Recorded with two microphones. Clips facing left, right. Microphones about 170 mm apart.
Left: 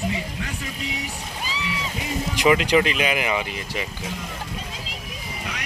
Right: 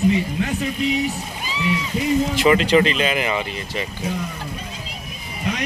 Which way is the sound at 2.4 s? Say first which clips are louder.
Even; 10° left (ahead or behind).